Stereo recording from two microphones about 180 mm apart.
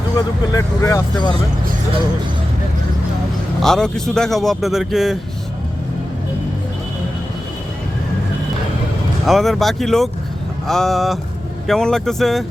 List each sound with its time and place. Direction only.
0.2 s speech: 20° left (ahead or behind)
3.6 s speech: 5° left (ahead or behind)
9.2 s speech: centre (ahead or behind)